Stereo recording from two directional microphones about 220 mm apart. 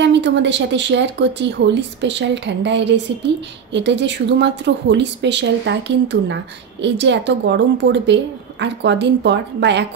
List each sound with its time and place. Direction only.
0.0 s a woman's voice: 55° right (ahead or behind)